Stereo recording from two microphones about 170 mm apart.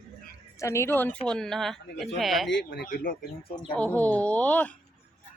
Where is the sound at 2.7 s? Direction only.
60° left (ahead or behind).